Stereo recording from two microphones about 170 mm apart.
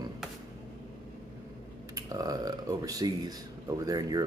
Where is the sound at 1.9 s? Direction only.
20° right (ahead or behind).